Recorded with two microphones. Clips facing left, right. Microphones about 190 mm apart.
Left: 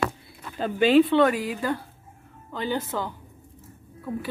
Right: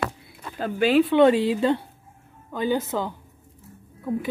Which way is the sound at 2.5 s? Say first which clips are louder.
Right 4 dB; 15° right (ahead or behind).